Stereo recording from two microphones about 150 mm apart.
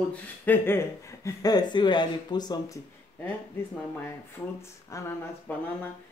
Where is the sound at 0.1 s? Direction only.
15° left (ahead or behind).